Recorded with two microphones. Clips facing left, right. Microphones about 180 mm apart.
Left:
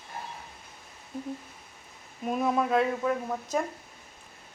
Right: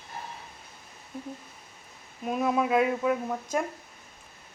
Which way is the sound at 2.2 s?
Centre (ahead or behind).